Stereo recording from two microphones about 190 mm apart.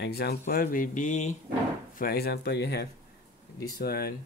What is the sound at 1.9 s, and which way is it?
Speech, 50° left (ahead or behind).